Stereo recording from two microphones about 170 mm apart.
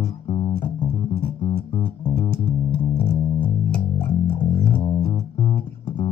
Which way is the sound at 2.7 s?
40° left (ahead or behind).